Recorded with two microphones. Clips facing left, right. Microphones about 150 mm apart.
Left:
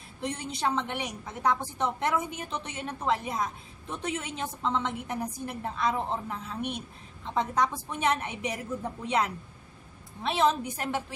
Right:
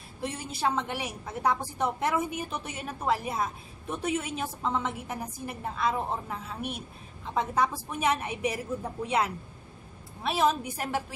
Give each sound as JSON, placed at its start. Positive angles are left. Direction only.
{"t": 0.2, "sound": "a woman's voice", "side_deg": -5}